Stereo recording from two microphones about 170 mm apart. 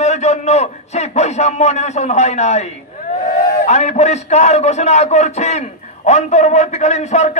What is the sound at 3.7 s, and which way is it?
A man's voice, 40° left (ahead or behind).